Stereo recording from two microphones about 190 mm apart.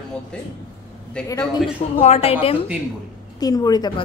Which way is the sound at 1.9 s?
35° left (ahead or behind).